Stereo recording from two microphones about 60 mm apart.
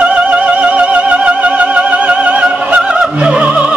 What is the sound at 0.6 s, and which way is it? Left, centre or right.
Music, right.